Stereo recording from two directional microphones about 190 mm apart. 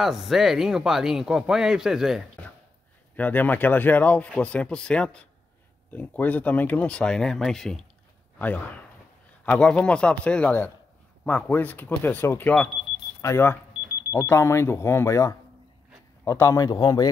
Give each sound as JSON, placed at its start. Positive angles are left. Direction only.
{"t": 0.0, "sound": "speech", "side_deg": 0}
{"t": 3.2, "sound": "speech", "side_deg": 10}
{"t": 9.5, "sound": "speech", "side_deg": 5}